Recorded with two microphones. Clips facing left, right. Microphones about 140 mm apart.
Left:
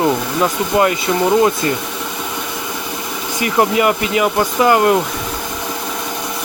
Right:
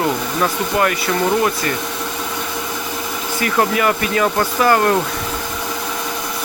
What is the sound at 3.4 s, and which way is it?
Speech, 20° left (ahead or behind).